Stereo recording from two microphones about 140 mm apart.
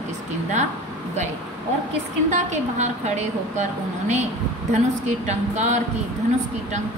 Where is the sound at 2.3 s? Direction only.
60° right (ahead or behind).